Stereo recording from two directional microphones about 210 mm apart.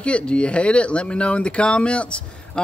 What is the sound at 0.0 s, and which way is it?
Speech, 5° left (ahead or behind).